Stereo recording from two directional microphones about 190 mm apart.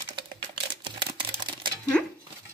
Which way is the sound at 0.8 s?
25° right (ahead or behind).